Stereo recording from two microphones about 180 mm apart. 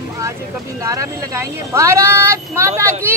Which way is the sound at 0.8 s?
20° right (ahead or behind).